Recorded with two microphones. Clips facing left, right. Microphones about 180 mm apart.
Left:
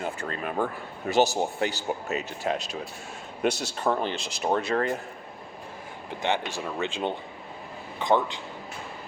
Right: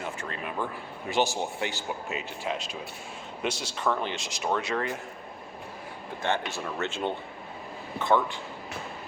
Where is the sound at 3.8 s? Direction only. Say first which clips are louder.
Left 2 dB; 35° left (ahead or behind).